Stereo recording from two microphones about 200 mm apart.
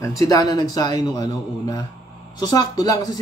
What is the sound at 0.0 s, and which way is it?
A man's voice, 15° left (ahead or behind).